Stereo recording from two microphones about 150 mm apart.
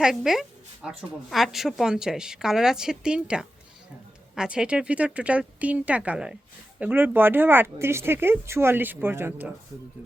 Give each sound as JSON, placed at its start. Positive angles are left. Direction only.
{"t": 0.0, "sound": "a woman's voice", "side_deg": -5}